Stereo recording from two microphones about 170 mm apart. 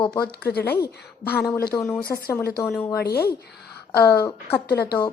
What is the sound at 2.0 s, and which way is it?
Speech, 65° left (ahead or behind).